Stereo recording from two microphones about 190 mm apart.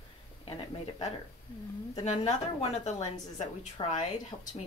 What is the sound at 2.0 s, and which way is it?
A woman's voice, 35° left (ahead or behind).